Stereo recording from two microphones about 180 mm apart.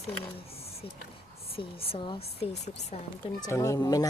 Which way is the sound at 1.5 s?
30° left (ahead or behind).